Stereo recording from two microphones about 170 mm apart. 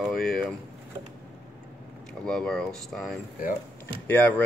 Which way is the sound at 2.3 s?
5° left (ahead or behind).